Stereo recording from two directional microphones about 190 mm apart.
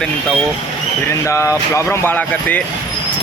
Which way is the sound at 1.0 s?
15° left (ahead or behind).